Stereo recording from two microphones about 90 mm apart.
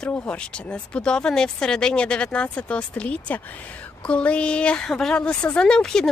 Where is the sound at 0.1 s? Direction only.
15° left (ahead or behind).